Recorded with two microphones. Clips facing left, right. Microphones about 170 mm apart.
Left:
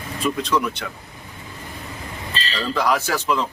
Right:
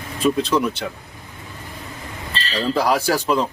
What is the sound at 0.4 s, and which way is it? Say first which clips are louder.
Speech: right 2 dB; 30° right (ahead or behind).